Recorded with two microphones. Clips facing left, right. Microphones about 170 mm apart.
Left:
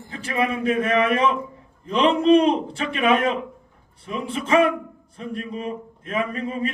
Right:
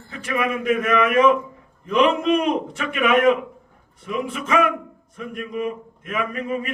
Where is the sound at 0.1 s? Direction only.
30° left (ahead or behind).